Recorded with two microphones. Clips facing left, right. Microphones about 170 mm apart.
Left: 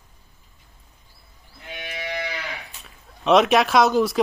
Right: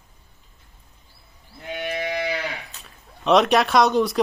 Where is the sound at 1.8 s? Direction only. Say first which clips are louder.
Right 7 dB; 55° right (ahead or behind).